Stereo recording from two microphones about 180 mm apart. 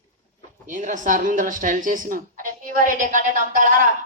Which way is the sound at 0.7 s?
45° right (ahead or behind).